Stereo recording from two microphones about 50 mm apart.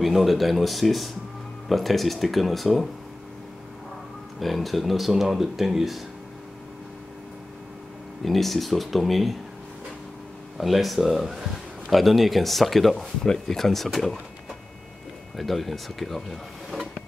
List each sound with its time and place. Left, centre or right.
0.0 s speech: centre
4.4 s speech: centre
8.2 s speech: centre
10.6 s speech: centre
12.9 s speech: centre
15.3 s speech: centre